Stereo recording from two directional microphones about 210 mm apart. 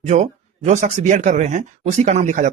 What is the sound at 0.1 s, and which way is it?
Speech, 35° right (ahead or behind).